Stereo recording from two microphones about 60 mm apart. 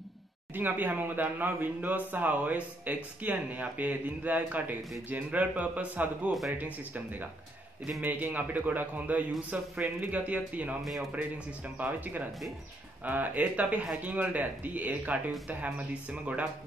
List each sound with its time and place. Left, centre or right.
0.6 s speech: right
10.8 s speech: centre
11.1 s speech: right